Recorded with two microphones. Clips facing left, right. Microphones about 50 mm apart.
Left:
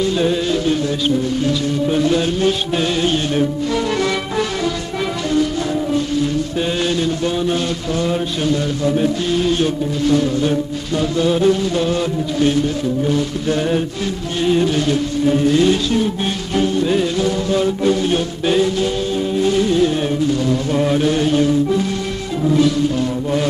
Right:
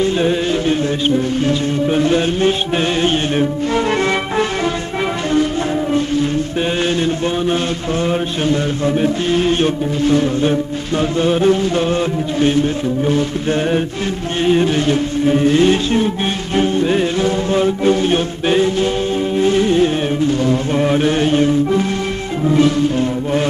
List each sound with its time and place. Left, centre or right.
0.0 s music: right
7.2 s mantra: right
16.5 s music: right